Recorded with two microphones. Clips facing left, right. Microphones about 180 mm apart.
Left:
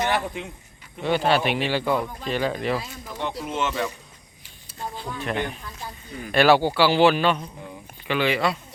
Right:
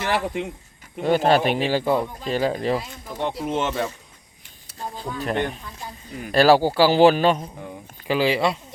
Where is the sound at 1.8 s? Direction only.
25° right (ahead or behind).